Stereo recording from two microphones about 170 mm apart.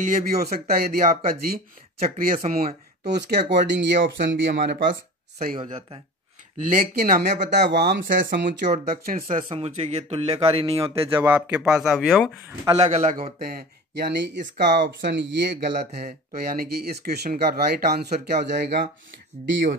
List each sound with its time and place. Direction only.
0.0 s speech: 55° right (ahead or behind)
3.1 s speech: 80° right
5.6 s speech: 30° right (ahead or behind)
7.0 s speech: 60° right (ahead or behind)
7.7 s speech: 80° right
8.8 s speech: 60° right (ahead or behind)
9.5 s speech: 40° right (ahead or behind)
11.0 s speech: 10° right (ahead or behind)
12.7 s a man's voice: 40° right (ahead or behind); by 18.9 s 70° right (ahead or behind)
19.4 s speech: 90° right